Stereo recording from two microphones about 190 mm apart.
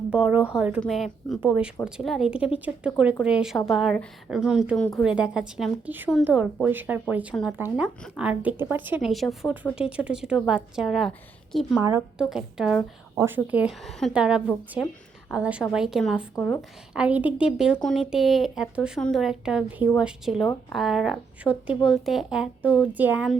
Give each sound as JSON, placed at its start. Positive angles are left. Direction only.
{"t": 0.1, "sound": "speech", "side_deg": -10}
{"t": 11.8, "sound": "speech", "side_deg": -15}
{"t": 12.3, "sound": "speech", "side_deg": -5}